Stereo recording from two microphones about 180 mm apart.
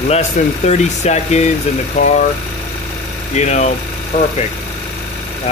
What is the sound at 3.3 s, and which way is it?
Speech, 40° left (ahead or behind).